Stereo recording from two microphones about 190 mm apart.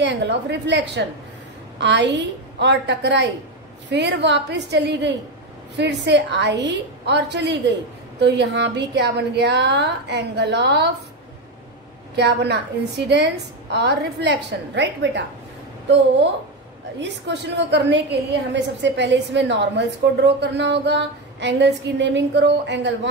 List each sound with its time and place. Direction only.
0.0 s a woman's voice: 65° right (ahead or behind)
12.2 s a woman's voice: 60° right (ahead or behind)
17.0 s a woman's voice: 65° right (ahead or behind)